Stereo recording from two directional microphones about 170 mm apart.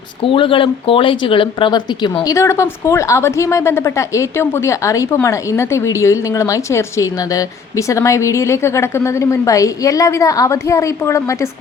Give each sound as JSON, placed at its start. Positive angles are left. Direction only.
{"t": 0.2, "sound": "speech", "side_deg": 30}